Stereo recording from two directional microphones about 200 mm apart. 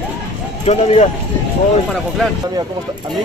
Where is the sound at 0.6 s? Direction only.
30° left (ahead or behind).